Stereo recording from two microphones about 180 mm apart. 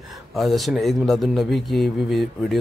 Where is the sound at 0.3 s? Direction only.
Centre (ahead or behind).